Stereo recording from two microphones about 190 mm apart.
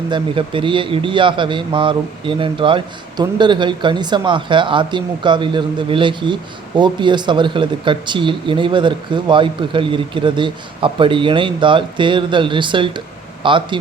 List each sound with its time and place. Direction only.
0.1 s a man's voice: 25° right (ahead or behind)